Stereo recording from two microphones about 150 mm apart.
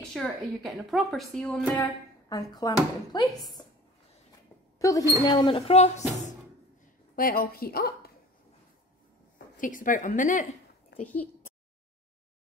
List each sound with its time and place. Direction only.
0.1 s a woman's voice: centre (ahead or behind)
1.8 s speech: 25° left (ahead or behind)
3.6 s a sound: 25° left (ahead or behind)
4.7 s speech: 20° left (ahead or behind)
5.7 s speech: 45° left (ahead or behind)
7.2 s a woman's voice: 80° left
9.6 s a woman's voice: 60° left (ahead or behind)
10.9 s a sound: 90° left